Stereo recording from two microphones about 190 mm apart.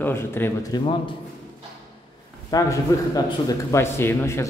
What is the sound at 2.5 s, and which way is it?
A man's voice, 20° left (ahead or behind).